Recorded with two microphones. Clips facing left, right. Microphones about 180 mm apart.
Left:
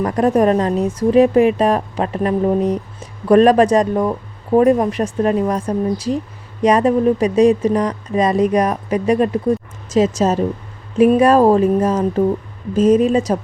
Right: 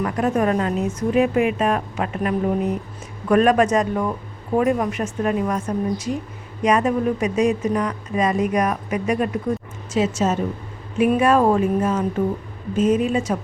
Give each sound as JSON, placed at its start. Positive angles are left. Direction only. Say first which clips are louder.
{"t": 0.0, "sound": "speech", "louder": "left 6 dB", "side_deg": 35}